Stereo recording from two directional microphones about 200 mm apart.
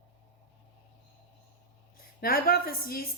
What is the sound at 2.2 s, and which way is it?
Speech, 50° left (ahead or behind).